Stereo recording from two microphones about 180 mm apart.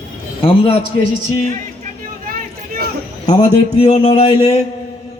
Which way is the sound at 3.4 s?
40° left (ahead or behind).